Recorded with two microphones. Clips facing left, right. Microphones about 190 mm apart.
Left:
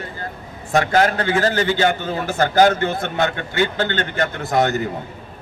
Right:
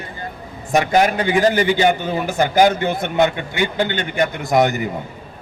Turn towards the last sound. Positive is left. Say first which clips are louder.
# right 2 dB
turn(degrees=-15)  # may be behind; listen again after turning